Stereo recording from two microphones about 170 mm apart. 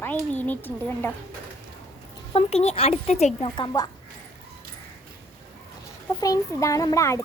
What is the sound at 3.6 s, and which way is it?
Speech, 25° left (ahead or behind).